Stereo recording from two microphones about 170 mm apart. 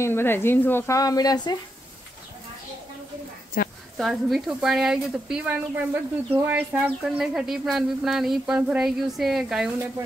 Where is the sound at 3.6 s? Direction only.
60° left (ahead or behind).